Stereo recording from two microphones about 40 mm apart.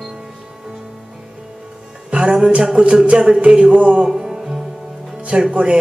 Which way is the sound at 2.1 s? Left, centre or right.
Right.